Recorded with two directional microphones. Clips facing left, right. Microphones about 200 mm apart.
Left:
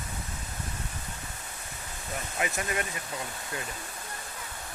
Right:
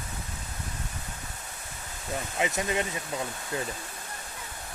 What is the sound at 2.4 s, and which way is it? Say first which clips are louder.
Speech: right 3 dB; 20° right (ahead or behind).